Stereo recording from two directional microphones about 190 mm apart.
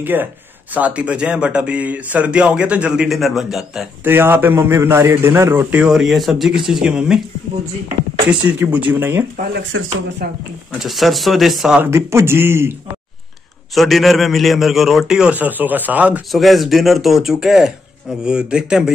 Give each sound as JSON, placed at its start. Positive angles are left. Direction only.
{"t": 0.0, "sound": "speech", "side_deg": -10}
{"t": 8.3, "sound": "speech", "side_deg": -10}
{"t": 9.4, "sound": "speech", "side_deg": -65}
{"t": 10.2, "sound": "speech", "side_deg": -55}
{"t": 10.8, "sound": "a man's voice", "side_deg": 0}
{"t": 13.7, "sound": "a man's voice", "side_deg": 0}